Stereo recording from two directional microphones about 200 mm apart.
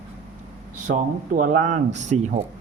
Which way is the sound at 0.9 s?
55° right (ahead or behind).